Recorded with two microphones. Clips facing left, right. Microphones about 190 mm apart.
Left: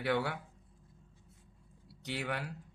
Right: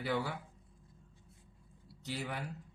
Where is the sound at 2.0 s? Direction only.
70° left (ahead or behind).